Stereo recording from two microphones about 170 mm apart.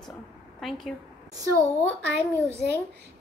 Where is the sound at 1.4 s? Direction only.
20° right (ahead or behind).